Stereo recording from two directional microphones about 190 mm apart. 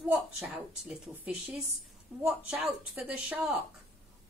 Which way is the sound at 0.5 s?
5° right (ahead or behind).